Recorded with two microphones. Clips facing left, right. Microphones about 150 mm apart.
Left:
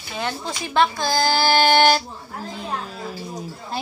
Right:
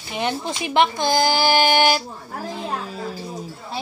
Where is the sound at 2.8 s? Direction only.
Centre (ahead or behind).